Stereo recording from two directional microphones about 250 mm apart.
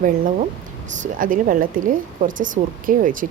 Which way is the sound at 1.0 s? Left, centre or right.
Right.